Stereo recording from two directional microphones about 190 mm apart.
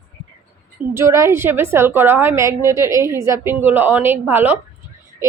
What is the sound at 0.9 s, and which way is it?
A woman's voice, 15° right (ahead or behind).